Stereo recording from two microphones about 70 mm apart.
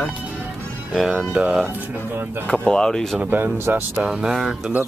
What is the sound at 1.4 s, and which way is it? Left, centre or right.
Speech, centre.